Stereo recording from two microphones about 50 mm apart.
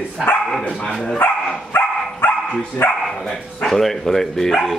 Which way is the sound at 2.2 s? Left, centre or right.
Left.